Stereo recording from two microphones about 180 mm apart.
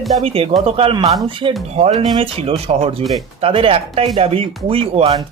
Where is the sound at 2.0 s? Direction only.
25° right (ahead or behind).